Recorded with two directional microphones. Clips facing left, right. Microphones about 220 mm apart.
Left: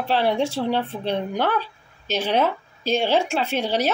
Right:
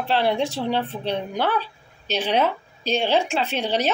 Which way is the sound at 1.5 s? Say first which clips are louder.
Even; 10° left (ahead or behind).